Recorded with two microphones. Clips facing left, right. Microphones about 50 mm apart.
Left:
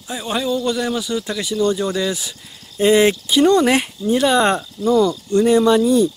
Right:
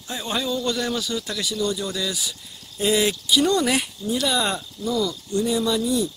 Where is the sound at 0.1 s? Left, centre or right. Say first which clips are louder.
Left 5 dB; centre.